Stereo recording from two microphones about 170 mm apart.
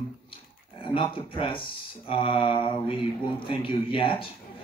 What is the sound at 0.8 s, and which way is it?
Speech, 30° left (ahead or behind).